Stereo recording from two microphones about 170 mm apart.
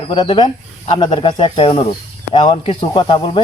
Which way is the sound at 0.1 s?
30° left (ahead or behind).